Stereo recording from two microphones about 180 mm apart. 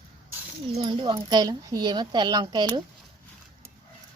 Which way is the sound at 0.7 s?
30° right (ahead or behind).